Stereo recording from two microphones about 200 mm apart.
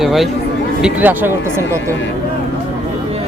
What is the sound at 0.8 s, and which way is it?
Speech, 5° right (ahead or behind).